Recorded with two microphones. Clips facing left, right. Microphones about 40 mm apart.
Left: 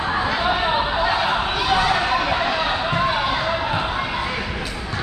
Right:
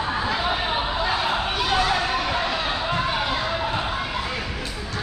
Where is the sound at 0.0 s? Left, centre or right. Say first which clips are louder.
Left 3 dB; centre.